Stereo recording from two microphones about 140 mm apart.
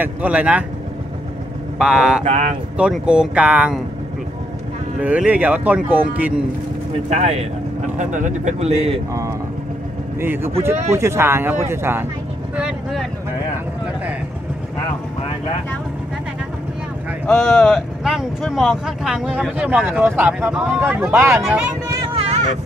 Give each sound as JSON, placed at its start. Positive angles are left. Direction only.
{"t": 0.0, "sound": "speech", "side_deg": -10}
{"t": 1.8, "sound": "speech", "side_deg": -5}
{"t": 2.2, "sound": "speech", "side_deg": -55}
{"t": 2.8, "sound": "speech", "side_deg": -5}
{"t": 5.0, "sound": "speech", "side_deg": -10}
{"t": 7.1, "sound": "speech", "side_deg": -50}
{"t": 8.0, "sound": "speech", "side_deg": -60}
{"t": 10.2, "sound": "speech", "side_deg": -15}
{"t": 12.5, "sound": "vehicle", "side_deg": -5}
{"t": 17.4, "sound": "speech", "side_deg": 0}
{"t": 22.0, "sound": "vehicle", "side_deg": -45}